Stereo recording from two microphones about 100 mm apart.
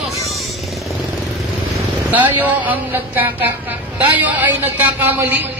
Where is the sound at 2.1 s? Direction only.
15° right (ahead or behind).